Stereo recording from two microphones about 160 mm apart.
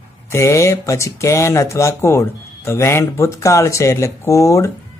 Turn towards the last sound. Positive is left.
turn(degrees=20)  # may be behind; listen again after turning